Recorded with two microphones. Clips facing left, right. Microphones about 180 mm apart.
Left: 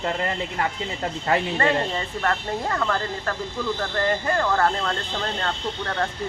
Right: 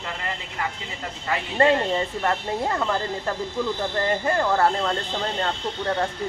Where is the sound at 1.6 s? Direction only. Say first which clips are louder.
Right 3 dB; 20° right (ahead or behind).